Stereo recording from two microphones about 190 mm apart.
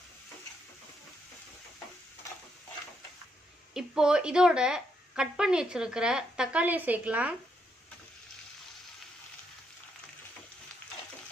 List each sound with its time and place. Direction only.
3.7 s a woman's voice: 5° right (ahead or behind)